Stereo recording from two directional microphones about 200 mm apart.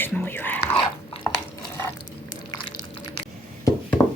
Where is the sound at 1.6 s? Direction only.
15° left (ahead or behind).